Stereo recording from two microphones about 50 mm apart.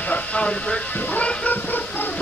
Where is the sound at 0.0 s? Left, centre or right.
Left.